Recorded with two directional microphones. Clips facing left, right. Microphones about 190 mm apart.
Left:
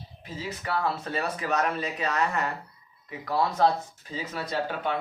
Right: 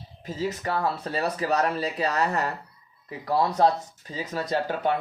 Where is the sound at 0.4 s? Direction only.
35° right (ahead or behind).